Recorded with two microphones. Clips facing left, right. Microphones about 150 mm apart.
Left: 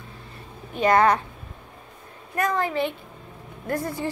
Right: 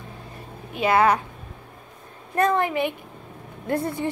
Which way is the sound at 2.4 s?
25° right (ahead or behind).